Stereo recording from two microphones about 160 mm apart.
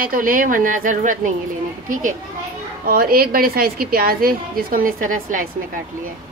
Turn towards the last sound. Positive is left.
turn(degrees=-55)  # may be behind; listen again after turning